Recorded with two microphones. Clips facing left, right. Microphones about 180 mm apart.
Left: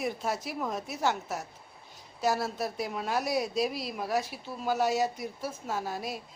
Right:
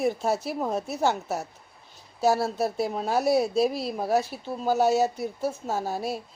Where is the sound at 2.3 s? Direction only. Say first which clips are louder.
Right 6 dB; 30° right (ahead or behind).